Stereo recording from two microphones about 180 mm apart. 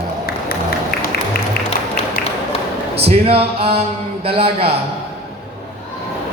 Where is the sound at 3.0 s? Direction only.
35° right (ahead or behind).